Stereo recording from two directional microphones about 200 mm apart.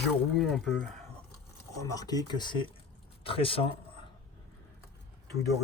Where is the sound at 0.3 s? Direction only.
Centre (ahead or behind).